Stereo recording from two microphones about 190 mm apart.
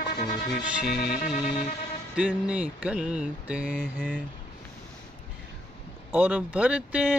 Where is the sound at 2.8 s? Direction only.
5° right (ahead or behind).